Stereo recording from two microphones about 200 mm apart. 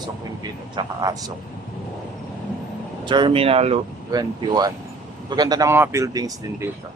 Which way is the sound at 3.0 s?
25° right (ahead or behind).